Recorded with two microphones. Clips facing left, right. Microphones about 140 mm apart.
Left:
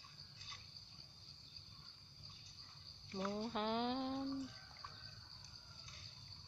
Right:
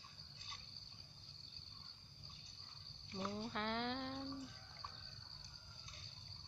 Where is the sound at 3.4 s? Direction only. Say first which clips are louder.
Left 3 dB; 20° left (ahead or behind).